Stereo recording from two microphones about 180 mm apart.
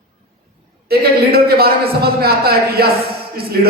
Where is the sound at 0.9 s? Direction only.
60° right (ahead or behind).